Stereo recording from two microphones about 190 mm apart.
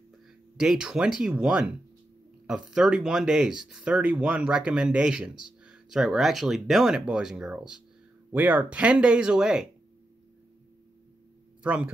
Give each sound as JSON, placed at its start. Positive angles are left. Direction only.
{"t": 0.6, "sound": "speech", "side_deg": -5}
{"t": 11.6, "sound": "speech", "side_deg": -5}